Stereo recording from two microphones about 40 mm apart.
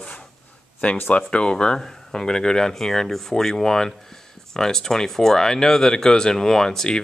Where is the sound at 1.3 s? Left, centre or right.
Left.